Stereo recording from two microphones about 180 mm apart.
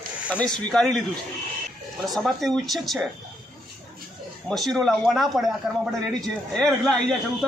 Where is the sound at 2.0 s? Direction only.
Centre (ahead or behind).